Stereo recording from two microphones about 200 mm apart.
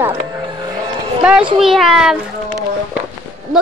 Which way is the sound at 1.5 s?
Centre (ahead or behind).